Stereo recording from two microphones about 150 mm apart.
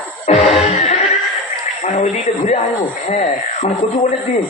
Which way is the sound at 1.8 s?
50° left (ahead or behind).